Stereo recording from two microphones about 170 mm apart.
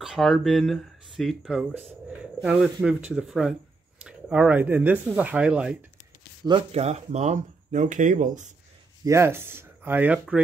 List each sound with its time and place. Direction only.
0.0 s speech: centre (ahead or behind)
6.4 s speech: 30° right (ahead or behind); by 8.5 s 50° right (ahead or behind)
9.0 s speech: 15° right (ahead or behind)